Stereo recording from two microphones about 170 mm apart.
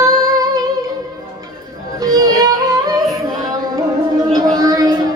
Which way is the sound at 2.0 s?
20° right (ahead or behind).